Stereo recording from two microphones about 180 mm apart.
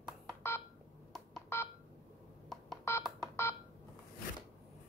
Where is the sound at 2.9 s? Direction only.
15° left (ahead or behind).